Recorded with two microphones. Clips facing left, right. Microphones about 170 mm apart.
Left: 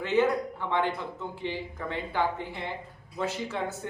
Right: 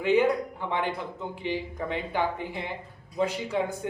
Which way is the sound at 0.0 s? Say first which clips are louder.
Right 2 dB; 15° right (ahead or behind).